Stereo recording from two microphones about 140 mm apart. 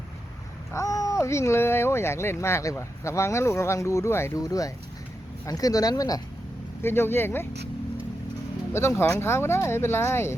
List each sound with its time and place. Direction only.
0.7 s speech: 25° left (ahead or behind)
6.8 s speech: 15° left (ahead or behind)
8.7 s speech: 20° left (ahead or behind)